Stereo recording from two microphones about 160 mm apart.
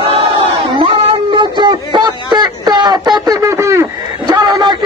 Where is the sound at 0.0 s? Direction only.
30° right (ahead or behind).